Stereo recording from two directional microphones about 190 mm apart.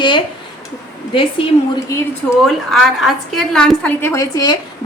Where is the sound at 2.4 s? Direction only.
Centre (ahead or behind).